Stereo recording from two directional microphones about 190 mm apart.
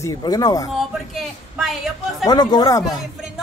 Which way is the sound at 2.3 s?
20° left (ahead or behind).